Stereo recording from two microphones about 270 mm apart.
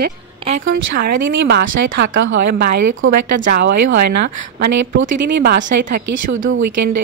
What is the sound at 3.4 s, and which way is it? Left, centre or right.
Speech, right.